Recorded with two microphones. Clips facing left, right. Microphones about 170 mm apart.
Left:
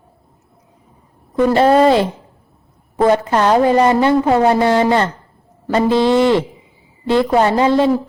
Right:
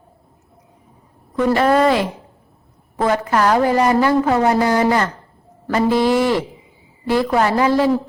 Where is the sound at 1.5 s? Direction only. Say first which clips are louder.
Left 4 dB; 30° left (ahead or behind).